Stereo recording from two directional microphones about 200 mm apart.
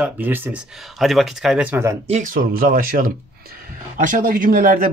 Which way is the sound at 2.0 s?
40° right (ahead or behind).